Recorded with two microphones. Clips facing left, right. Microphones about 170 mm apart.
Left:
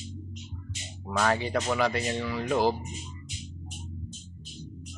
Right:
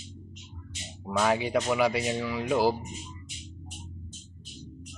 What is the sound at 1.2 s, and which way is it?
Speech, 10° right (ahead or behind).